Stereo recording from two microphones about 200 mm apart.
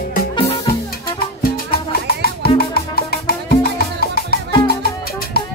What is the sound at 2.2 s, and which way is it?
Music, 50° left (ahead or behind).